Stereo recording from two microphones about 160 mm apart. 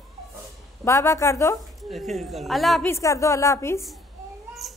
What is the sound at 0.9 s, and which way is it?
Speech, 20° left (ahead or behind).